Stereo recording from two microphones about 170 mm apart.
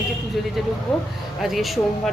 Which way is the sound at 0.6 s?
Centre (ahead or behind).